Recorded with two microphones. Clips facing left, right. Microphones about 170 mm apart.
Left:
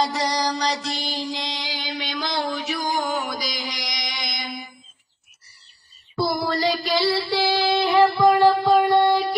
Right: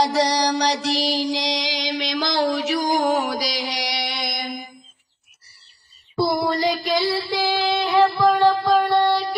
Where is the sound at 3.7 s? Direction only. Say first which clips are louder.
Right 6 dB; 65° right (ahead or behind).